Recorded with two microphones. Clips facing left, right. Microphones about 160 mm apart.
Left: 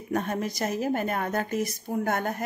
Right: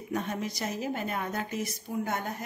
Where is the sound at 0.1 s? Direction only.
50° left (ahead or behind).